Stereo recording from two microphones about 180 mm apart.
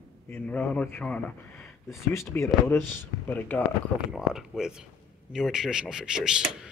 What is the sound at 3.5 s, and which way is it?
Speech, 10° left (ahead or behind).